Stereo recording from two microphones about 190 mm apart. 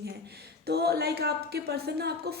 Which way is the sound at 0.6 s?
55° right (ahead or behind).